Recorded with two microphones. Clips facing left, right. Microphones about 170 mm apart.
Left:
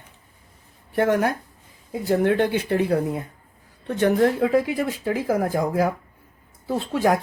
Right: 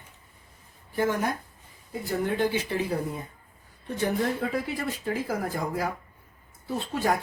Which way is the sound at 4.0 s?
80° left.